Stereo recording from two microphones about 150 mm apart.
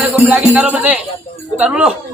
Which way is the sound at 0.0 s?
10° right (ahead or behind).